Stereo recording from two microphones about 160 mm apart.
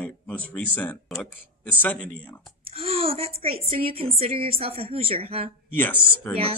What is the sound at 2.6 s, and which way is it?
A woman's voice, 35° right (ahead or behind).